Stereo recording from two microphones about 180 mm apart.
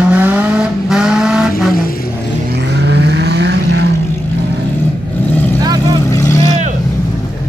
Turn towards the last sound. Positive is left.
turn(degrees=15)  # may be behind; listen again after turning